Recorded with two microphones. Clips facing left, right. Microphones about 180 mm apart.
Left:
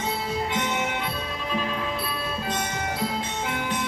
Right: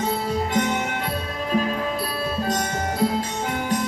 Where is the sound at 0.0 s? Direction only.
45° right (ahead or behind).